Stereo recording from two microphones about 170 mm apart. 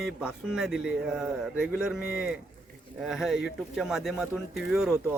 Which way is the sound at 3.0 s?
Centre (ahead or behind).